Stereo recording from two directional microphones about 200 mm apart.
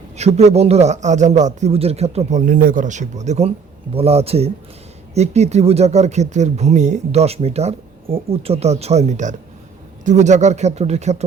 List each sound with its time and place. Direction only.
0.2 s speech: 35° right (ahead or behind)
2.5 s speech: 45° right (ahead or behind)